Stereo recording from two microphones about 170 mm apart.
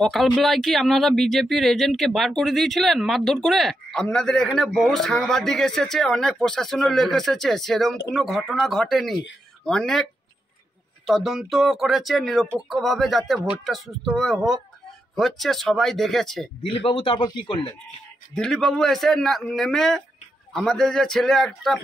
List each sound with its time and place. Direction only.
0.0 s speech: centre (ahead or behind)
11.1 s speech: centre (ahead or behind)
16.6 s a man's voice: 30° left (ahead or behind)
18.3 s speech: 5° left (ahead or behind)